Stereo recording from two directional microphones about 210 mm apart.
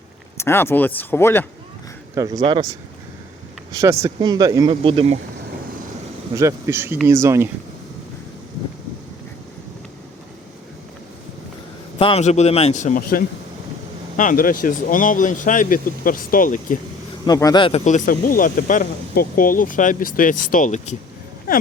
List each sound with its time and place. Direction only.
0.3 s speech: 10° left (ahead or behind)
2.1 s speech: 15° right (ahead or behind)
3.8 s speech: 15° right (ahead or behind)
6.3 s speech: 15° right (ahead or behind)
11.9 s speech: 25° left (ahead or behind)
17.2 s speech: 20° left (ahead or behind); by 20.9 s 35° left (ahead or behind)